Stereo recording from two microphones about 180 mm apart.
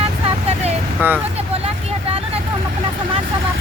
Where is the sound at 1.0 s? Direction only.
10° right (ahead or behind).